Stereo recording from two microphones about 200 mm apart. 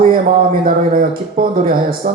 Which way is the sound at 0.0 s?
45° right (ahead or behind).